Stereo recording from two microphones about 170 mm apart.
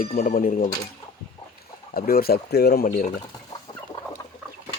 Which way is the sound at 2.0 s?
60° left (ahead or behind).